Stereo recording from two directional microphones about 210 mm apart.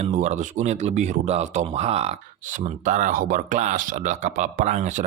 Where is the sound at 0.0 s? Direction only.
35° right (ahead or behind).